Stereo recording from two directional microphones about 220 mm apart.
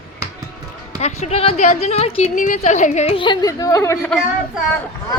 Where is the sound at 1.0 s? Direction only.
30° left (ahead or behind); by 4.1 s 15° left (ahead or behind).